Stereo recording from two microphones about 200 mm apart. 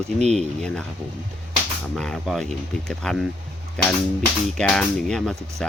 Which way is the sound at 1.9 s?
Centre (ahead or behind).